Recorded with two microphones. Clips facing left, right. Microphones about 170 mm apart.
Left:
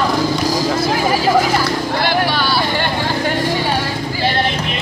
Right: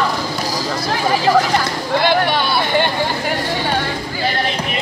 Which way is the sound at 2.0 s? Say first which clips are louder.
Right 2 dB; 20° right (ahead or behind).